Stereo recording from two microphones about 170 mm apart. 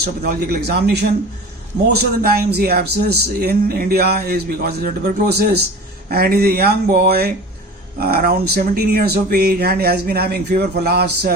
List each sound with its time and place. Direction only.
0.2 s speech: 65° right (ahead or behind)